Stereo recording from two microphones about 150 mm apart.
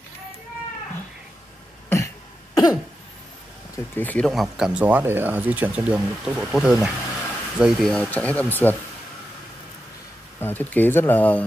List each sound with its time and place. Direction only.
1.9 s cough: 15° left (ahead or behind)
3.7 s speech: 15° left (ahead or behind)
4.3 s speech: centre (ahead or behind)
7.9 s speech: 10° left (ahead or behind)
10.4 s speech: 10° left (ahead or behind)